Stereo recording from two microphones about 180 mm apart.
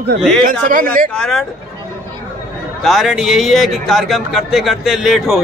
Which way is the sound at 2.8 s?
Centre (ahead or behind).